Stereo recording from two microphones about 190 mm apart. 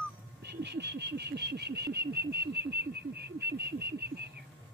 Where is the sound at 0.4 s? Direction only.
60° right (ahead or behind).